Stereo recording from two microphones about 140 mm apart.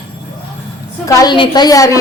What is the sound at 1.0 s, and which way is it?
Speech, 20° left (ahead or behind).